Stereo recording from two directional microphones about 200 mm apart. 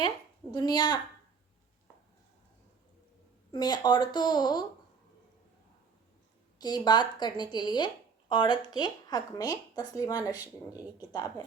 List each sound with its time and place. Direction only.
0.5 s a woman's voice: 20° left (ahead or behind)
3.5 s a woman's voice: 20° left (ahead or behind)
6.6 s a woman's voice: 20° left (ahead or behind)